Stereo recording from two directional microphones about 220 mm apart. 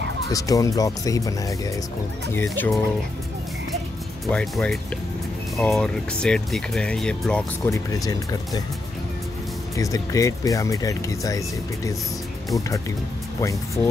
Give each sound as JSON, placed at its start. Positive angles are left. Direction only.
{"t": 0.3, "sound": "speech", "side_deg": 15}
{"t": 4.3, "sound": "speech", "side_deg": 5}
{"t": 9.8, "sound": "speech", "side_deg": 15}